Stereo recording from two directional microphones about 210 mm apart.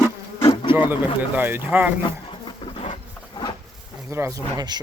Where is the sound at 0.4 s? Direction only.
25° left (ahead or behind).